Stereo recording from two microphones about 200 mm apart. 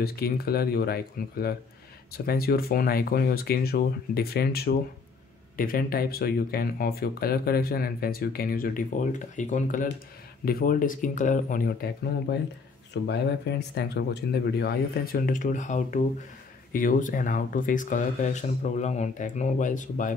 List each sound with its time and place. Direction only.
0.0 s speech: 50° left (ahead or behind)